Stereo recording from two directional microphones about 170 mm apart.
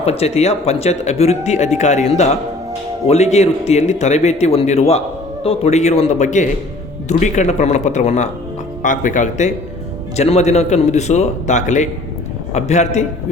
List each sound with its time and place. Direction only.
0.0 s a man's voice: 40° left (ahead or behind)